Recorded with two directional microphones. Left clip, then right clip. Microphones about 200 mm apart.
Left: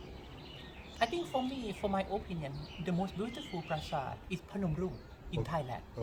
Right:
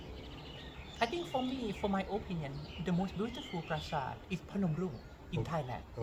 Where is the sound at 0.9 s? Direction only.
20° left (ahead or behind).